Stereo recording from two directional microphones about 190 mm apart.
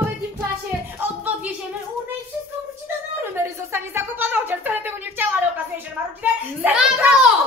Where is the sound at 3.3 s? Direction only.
15° right (ahead or behind).